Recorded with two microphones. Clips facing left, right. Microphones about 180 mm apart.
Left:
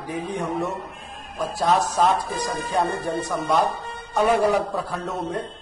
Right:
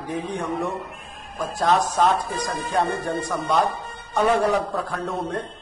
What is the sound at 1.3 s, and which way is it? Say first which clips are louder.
A man's voice: even; 5° left (ahead or behind).